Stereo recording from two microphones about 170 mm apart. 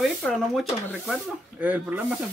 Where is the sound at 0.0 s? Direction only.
Centre (ahead or behind).